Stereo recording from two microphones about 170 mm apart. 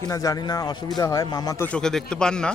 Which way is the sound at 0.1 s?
20° left (ahead or behind).